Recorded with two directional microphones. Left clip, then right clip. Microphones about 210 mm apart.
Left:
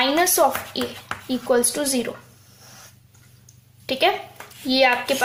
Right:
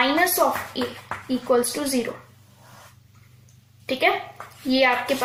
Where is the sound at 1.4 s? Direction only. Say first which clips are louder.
Left 1 dB; 25° left (ahead or behind).